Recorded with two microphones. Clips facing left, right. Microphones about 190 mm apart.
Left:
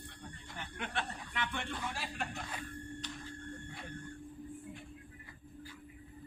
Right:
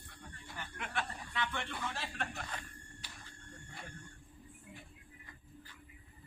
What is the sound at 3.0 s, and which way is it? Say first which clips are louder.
Sonar: left 10 dB; 10° right (ahead or behind).